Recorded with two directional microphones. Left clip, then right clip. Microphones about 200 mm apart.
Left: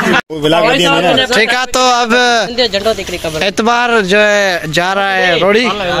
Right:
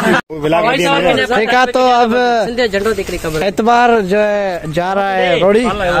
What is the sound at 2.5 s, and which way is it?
Speech, 55° right (ahead or behind).